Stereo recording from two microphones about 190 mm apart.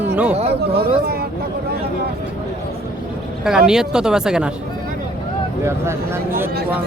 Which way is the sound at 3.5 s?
5° right (ahead or behind).